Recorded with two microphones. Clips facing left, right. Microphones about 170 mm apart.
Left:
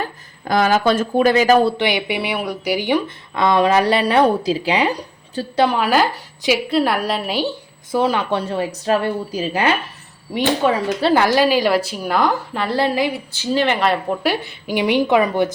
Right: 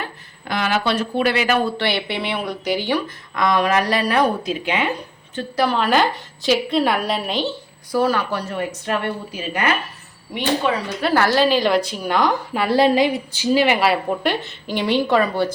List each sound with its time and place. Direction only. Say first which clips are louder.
0.4 s speech: left 5 dB; 40° left (ahead or behind)
1.8 s a woman's voice: left 3 dB; 15° left (ahead or behind)
3.3 s speech: left 3 dB; 30° left (ahead or behind)
5.7 s a woman's voice: left 1 dB; 5° left (ahead or behind)
7.9 s speech: left 1 dB; 20° left (ahead or behind); by 11.1 s 40° left (ahead or behind)
11.1 s a woman's voice: left 1 dB; 15° left (ahead or behind)
12.5 s a woman's voice: right 6 dB; 15° right (ahead or behind); by 15.4 s 15° left (ahead or behind)